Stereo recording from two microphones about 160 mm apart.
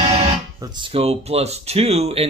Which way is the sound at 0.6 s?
30° right (ahead or behind).